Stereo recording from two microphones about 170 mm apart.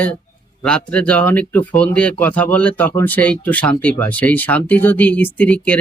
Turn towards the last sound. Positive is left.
turn(degrees=10)  # may be behind; listen again after turning